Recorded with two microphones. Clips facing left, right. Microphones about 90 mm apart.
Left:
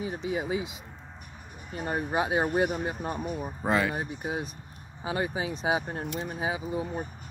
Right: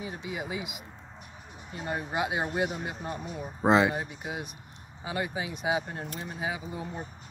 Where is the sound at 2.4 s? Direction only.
45° left (ahead or behind).